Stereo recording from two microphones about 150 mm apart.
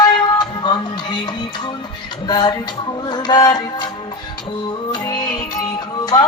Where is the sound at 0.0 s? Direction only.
30° left (ahead or behind).